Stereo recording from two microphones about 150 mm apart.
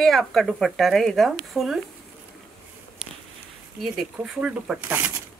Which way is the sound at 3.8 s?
Centre (ahead or behind).